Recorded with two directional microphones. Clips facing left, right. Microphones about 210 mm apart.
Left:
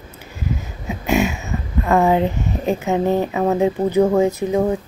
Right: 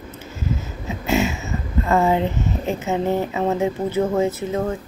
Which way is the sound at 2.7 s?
15° left (ahead or behind).